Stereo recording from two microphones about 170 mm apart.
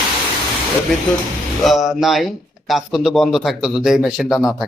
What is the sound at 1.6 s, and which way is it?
Speech, centre (ahead or behind).